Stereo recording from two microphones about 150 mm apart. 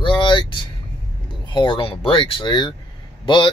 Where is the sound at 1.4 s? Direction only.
30° left (ahead or behind).